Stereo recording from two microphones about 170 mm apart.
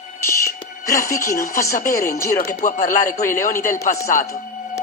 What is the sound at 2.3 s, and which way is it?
Speech, 45° left (ahead or behind).